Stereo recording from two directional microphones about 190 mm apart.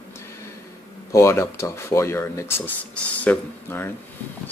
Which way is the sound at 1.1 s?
15° left (ahead or behind).